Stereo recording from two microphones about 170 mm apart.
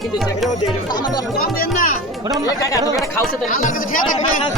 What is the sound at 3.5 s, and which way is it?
Speech, 55° left (ahead or behind).